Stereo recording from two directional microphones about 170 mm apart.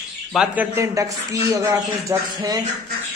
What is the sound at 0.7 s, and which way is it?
Speech, 20° right (ahead or behind).